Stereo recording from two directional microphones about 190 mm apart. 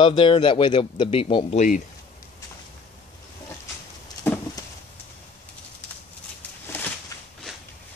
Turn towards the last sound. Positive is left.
turn(degrees=15)  # may be behind; listen again after turning